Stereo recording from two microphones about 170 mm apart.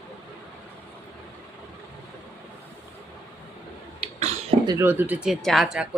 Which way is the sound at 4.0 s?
35° right (ahead or behind).